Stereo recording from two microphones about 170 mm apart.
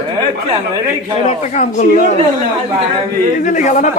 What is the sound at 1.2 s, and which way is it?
Speech, 45° left (ahead or behind).